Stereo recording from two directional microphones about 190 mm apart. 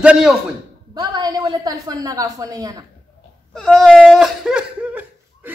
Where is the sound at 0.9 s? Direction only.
25° right (ahead or behind).